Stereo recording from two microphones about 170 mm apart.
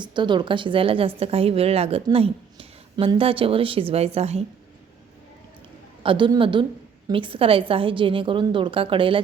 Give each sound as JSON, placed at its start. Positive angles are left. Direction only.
{"t": 0.0, "sound": "a woman's voice", "side_deg": -25}
{"t": 6.0, "sound": "a woman's voice", "side_deg": -30}